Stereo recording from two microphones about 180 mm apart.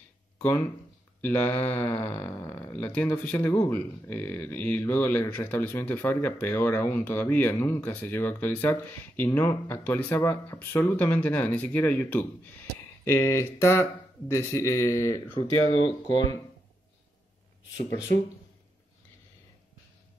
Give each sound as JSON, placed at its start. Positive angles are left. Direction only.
{"t": 1.2, "sound": "speech", "side_deg": 10}